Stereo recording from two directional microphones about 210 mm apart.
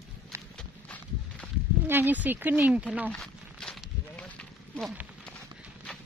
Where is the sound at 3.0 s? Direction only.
Centre (ahead or behind).